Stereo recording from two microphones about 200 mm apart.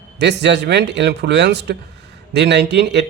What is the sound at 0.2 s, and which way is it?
Speech, 60° right (ahead or behind).